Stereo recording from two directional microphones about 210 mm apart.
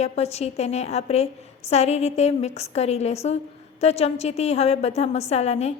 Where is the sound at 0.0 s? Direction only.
30° left (ahead or behind).